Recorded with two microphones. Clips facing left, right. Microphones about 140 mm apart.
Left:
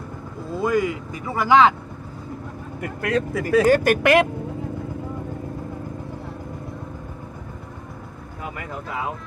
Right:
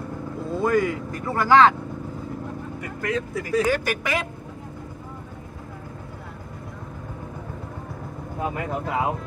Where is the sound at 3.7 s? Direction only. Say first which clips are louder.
Left 7 dB; 50° left (ahead or behind).